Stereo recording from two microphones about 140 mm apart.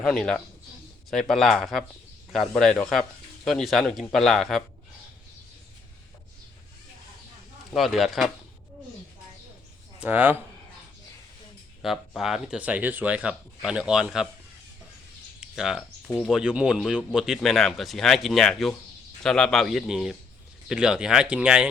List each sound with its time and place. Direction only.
0.0 s speech: 5° left (ahead or behind)
7.7 s speech: centre (ahead or behind)
10.0 s speech: 10° right (ahead or behind)
11.8 s speech: centre (ahead or behind)
15.4 s a sound: 5° right (ahead or behind)
16.0 s speech: 10° left (ahead or behind)
16.3 s speech: 5° right (ahead or behind)